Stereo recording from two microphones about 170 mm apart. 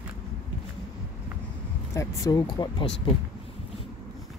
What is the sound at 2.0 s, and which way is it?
Speech, 20° left (ahead or behind).